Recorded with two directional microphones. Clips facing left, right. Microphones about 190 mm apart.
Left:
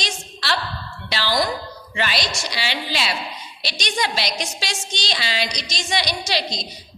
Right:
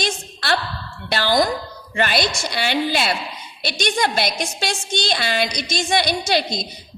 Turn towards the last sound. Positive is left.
turn(degrees=-50)  # may be behind; listen again after turning